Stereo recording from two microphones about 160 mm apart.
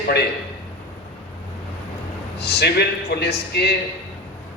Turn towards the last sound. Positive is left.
turn(degrees=90)